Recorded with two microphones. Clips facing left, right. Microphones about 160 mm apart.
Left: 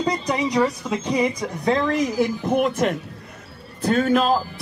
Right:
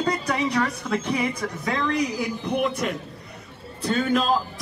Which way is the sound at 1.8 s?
45° left (ahead or behind).